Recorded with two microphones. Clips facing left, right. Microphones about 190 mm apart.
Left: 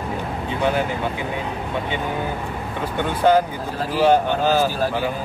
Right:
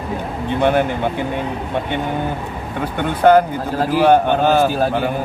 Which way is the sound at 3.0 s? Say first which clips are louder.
Right 5 dB; 55° right (ahead or behind).